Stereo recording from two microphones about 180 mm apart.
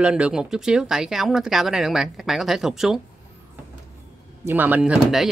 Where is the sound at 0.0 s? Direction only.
5° right (ahead or behind).